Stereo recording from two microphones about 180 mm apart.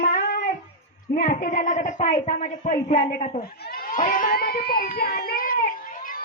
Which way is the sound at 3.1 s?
55° left (ahead or behind).